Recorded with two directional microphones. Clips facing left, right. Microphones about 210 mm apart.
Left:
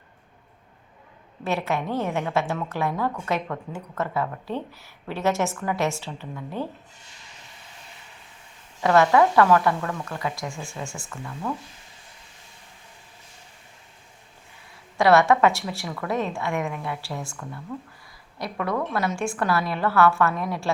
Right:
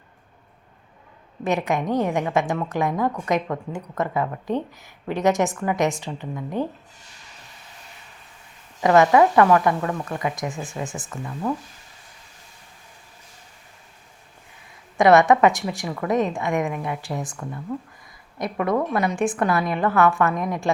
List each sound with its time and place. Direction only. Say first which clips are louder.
1.5 s a woman's voice: right 3 dB; 15° right (ahead or behind)
8.8 s a woman's voice: right 3 dB; 15° right (ahead or behind)
14.9 s a woman's voice: right 3 dB; 20° right (ahead or behind)